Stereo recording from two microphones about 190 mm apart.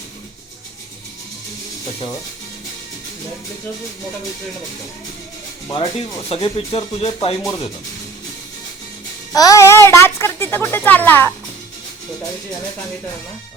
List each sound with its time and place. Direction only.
5.6 s speech: 20° left (ahead or behind)
6.0 s speech: 30° left (ahead or behind)
9.3 s speech: 20° left (ahead or behind)